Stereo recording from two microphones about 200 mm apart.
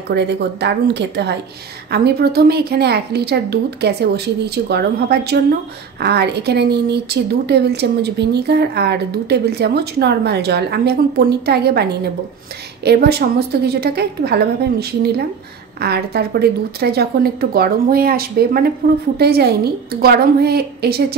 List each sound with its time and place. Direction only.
0.1 s speech: 60° right (ahead or behind)